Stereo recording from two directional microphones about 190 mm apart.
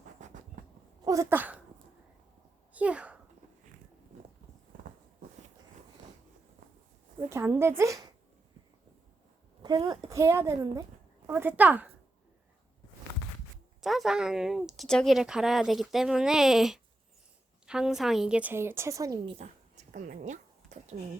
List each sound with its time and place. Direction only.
0.2 s train: 40° right (ahead or behind)
1.0 s speech: 15° right (ahead or behind)
2.7 s a child's voice: 5° right (ahead or behind)
7.3 s a woman's voice: 15° right (ahead or behind)
9.6 s a woman's voice: 25° right (ahead or behind)
13.8 s a woman's voice: centre (ahead or behind); by 19.3 s 20° right (ahead or behind)
19.4 s a sound: 40° right (ahead or behind)